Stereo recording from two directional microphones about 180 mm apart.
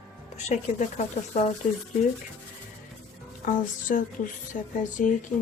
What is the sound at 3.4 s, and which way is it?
Speech, 45° left (ahead or behind).